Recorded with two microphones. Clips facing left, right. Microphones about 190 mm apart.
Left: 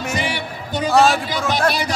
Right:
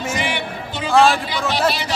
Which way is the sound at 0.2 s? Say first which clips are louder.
Right 1 dB; 40° left (ahead or behind).